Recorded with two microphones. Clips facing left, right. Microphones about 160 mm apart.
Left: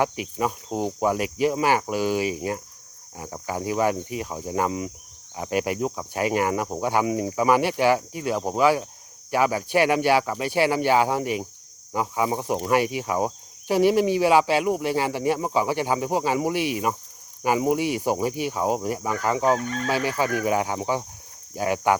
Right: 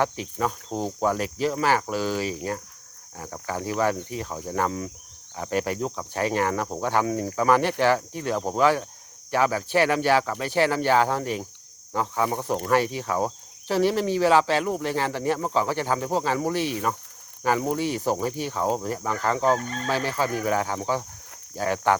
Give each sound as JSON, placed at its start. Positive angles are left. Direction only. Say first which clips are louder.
{"t": 0.0, "sound": "cricket", "louder": "left 1 dB", "side_deg": 15}
{"t": 19.6, "sound": "speech", "louder": "left 3 dB", "side_deg": -35}
{"t": 19.9, "sound": "cricket", "louder": "left 1 dB", "side_deg": 10}